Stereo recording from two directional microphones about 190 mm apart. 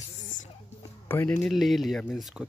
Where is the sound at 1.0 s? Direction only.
10° left (ahead or behind).